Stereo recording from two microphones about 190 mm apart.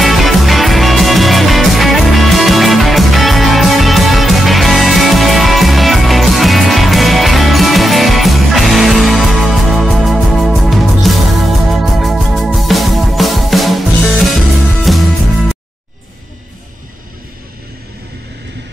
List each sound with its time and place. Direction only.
0.0 s music: centre (ahead or behind)